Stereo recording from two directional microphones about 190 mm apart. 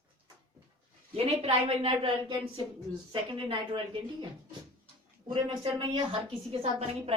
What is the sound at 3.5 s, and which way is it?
Speech, 25° right (ahead or behind).